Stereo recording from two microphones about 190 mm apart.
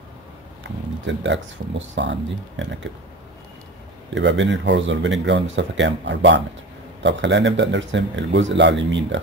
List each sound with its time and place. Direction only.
1.0 s speech: 75° right (ahead or behind)
4.1 s speech: 70° right (ahead or behind)